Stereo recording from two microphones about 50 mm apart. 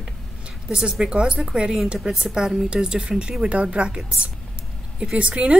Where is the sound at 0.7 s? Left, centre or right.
Centre.